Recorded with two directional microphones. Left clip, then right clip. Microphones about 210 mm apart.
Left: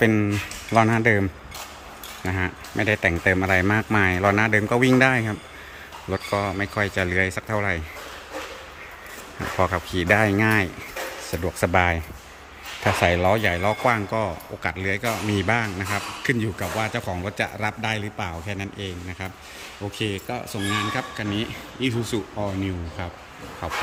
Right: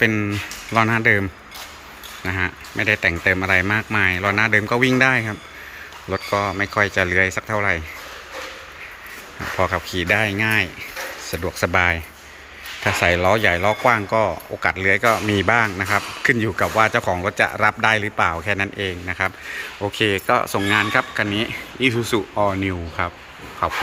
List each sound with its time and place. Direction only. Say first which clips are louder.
0.0 s speech: right 2 dB; 15° left (ahead or behind)
9.6 s speech: right 2 dB; 15° left (ahead or behind)